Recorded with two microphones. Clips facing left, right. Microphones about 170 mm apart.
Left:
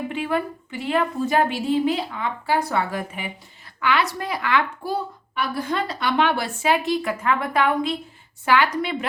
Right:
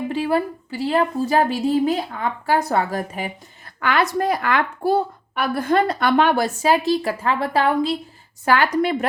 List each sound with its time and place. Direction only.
0.1 s a woman's voice: 35° right (ahead or behind)